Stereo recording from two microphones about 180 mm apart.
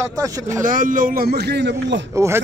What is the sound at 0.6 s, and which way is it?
Speech, 50° right (ahead or behind).